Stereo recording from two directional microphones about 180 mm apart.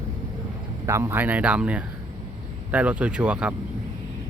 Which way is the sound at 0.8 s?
15° right (ahead or behind).